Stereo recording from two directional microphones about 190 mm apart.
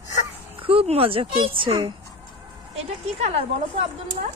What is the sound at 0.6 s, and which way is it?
A woman's voice, 30° right (ahead or behind).